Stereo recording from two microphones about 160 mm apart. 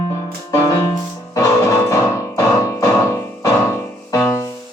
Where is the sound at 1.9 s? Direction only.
20° left (ahead or behind).